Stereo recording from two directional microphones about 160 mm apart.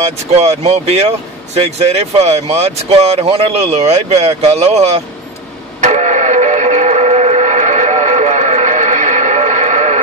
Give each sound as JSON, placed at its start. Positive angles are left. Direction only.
{"t": 0.4, "sound": "speech", "side_deg": -40}
{"t": 5.8, "sound": "music", "side_deg": -45}